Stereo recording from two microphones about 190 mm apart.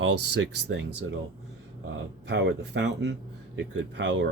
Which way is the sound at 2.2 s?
70° right (ahead or behind).